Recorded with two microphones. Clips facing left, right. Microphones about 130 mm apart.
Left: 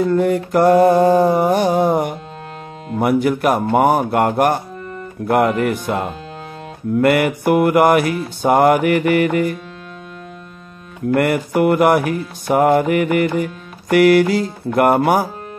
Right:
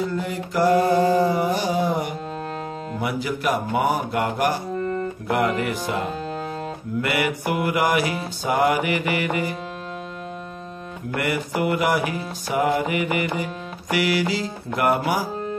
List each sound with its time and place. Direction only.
0.1 s music: 55° left (ahead or behind)
3.0 s speech: 55° left (ahead or behind)
5.3 s music: 50° left (ahead or behind)
11.1 s music: 55° left (ahead or behind)